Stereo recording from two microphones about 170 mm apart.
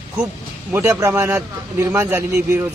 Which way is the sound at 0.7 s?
15° right (ahead or behind).